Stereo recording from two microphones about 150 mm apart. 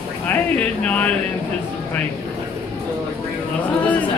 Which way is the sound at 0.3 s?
10° left (ahead or behind).